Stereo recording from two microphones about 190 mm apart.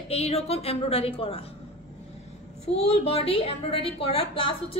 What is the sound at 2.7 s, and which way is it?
A woman's voice, 30° left (ahead or behind).